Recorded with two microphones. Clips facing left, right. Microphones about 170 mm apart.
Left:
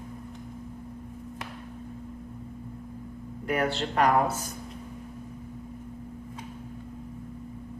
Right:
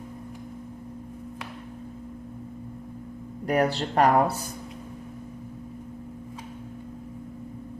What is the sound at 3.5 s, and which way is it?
Speech, 40° right (ahead or behind).